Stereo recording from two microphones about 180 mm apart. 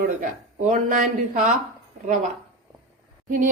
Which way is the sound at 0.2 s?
45° right (ahead or behind).